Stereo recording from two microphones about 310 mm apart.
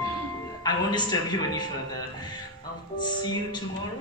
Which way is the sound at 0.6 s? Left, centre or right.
Centre.